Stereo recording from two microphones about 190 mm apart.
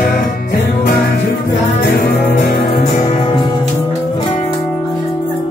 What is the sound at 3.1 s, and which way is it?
Music, 35° left (ahead or behind).